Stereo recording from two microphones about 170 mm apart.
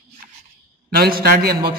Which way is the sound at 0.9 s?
65° right (ahead or behind).